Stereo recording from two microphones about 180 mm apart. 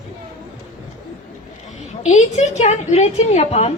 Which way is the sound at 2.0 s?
40° left (ahead or behind).